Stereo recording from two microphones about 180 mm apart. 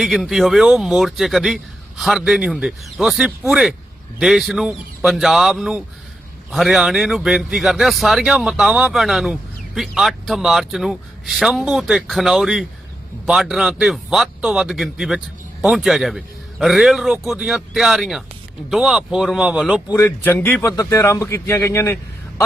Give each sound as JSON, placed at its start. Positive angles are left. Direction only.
{"t": 0.0, "sound": "a man's voice", "side_deg": 0}
{"t": 19.9, "sound": "speech", "side_deg": 15}